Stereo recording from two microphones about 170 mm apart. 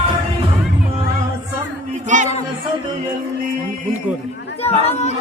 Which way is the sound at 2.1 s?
45° right (ahead or behind).